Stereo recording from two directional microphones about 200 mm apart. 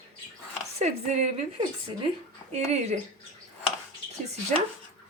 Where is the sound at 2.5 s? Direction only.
35° right (ahead or behind).